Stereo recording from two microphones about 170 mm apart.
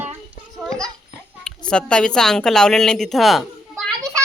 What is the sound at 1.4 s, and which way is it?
A woman's voice, 5° left (ahead or behind).